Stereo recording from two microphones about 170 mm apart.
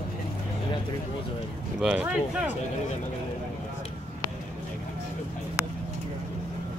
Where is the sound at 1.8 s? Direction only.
5° right (ahead or behind).